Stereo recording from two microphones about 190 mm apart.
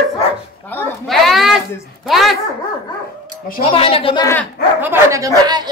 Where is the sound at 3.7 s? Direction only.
30° left (ahead or behind).